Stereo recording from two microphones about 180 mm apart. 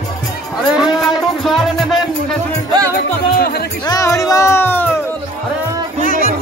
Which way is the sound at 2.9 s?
60° left (ahead or behind).